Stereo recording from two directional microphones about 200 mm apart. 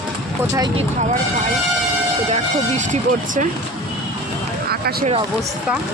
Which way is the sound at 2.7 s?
35° right (ahead or behind).